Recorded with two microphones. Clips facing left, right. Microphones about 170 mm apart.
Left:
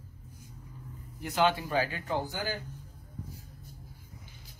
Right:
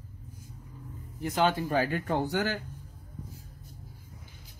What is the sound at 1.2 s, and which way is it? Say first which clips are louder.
Speech: right 1 dB; 40° right (ahead or behind).